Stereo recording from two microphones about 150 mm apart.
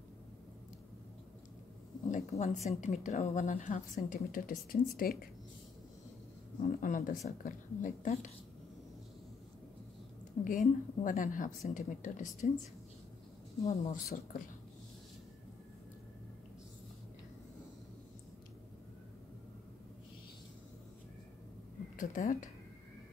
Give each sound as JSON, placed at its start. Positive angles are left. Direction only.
{"t": 2.0, "sound": "a woman's voice", "side_deg": 55}
{"t": 6.6, "sound": "a woman's voice", "side_deg": 60}
{"t": 10.4, "sound": "a woman's voice", "side_deg": 65}
{"t": 13.7, "sound": "speech", "side_deg": 50}
{"t": 14.0, "sound": "speech", "side_deg": 75}
{"t": 21.9, "sound": "speech", "side_deg": 60}